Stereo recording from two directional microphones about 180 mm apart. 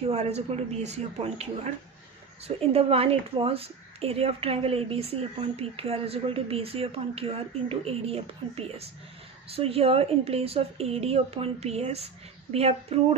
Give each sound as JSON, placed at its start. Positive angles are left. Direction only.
{"t": 0.1, "sound": "a woman's voice", "side_deg": -35}